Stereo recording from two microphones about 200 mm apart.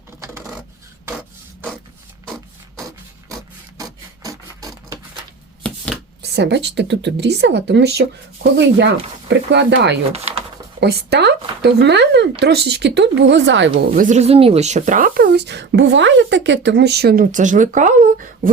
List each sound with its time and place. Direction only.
3.2 s rub: 20° right (ahead or behind)
4.2 s printer: 20° right (ahead or behind)
5.6 s chopping: 5° left (ahead or behind)
6.3 s speech: 55° right (ahead or behind)
9.3 s speech: 60° right (ahead or behind)
10.1 s speech: 30° right (ahead or behind)
10.8 s speech: 55° right (ahead or behind)
13.9 s speech: 40° right (ahead or behind)